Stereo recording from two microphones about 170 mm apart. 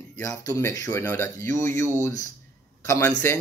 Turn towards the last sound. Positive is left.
turn(degrees=15)  # may be behind; listen again after turning